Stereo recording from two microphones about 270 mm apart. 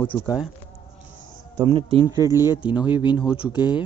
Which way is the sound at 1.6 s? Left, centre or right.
Centre.